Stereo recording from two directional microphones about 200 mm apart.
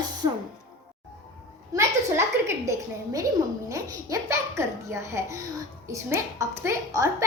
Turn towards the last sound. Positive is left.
turn(degrees=-15)  # may be behind; listen again after turning